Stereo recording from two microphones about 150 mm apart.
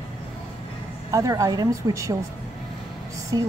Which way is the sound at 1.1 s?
20° right (ahead or behind).